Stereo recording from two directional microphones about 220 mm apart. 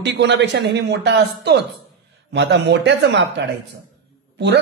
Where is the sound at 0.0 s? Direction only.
50° right (ahead or behind).